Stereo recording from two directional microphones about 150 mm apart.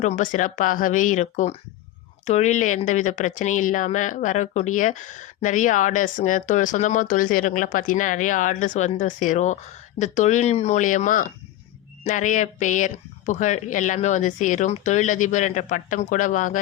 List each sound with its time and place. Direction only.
0.0 s speech: 55° left (ahead or behind)